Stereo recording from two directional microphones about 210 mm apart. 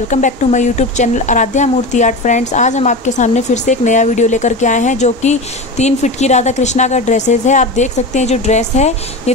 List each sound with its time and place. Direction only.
0.1 s speech: 35° left (ahead or behind)